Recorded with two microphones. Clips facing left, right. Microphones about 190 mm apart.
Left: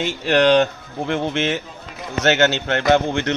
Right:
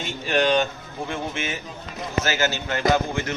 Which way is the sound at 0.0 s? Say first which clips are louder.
Left 6 dB; 70° left (ahead or behind).